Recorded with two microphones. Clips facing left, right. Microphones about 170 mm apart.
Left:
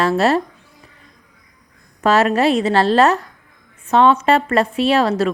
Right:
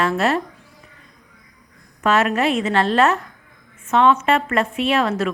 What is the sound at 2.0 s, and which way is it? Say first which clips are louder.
Speech: left 3 dB; 35° left (ahead or behind).